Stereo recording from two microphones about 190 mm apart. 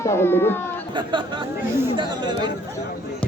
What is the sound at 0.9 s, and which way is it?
Speech, 25° right (ahead or behind).